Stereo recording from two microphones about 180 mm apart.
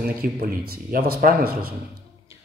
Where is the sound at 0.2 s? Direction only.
55° right (ahead or behind).